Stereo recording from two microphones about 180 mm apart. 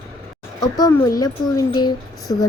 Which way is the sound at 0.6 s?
20° left (ahead or behind).